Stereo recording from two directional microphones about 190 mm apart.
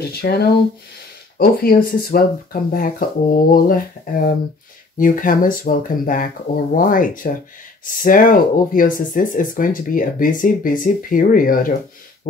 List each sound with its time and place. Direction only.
0.1 s speech: 55° left (ahead or behind)